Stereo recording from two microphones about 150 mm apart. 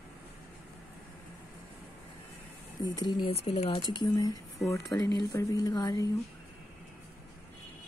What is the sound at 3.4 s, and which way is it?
Speech, 40° left (ahead or behind).